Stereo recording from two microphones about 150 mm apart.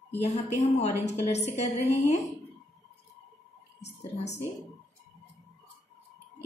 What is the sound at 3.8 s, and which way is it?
Speech, 45° left (ahead or behind).